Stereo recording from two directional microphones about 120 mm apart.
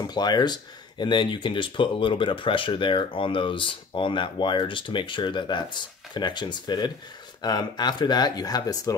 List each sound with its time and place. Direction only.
0.0 s speech: 35° left (ahead or behind)